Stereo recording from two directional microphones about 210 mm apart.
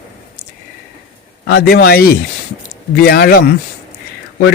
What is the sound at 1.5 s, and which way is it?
A man's voice, 50° left (ahead or behind).